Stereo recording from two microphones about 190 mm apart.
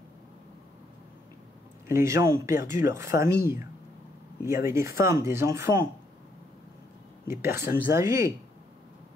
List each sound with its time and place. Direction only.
1.9 s speech: 15° right (ahead or behind)
4.5 s speech: 15° right (ahead or behind)
7.2 s speech: 15° right (ahead or behind)